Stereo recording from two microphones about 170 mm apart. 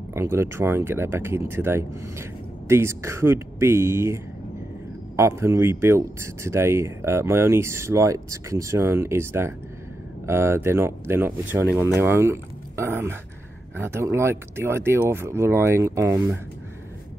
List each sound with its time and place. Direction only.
0.1 s speech: 15° right (ahead or behind)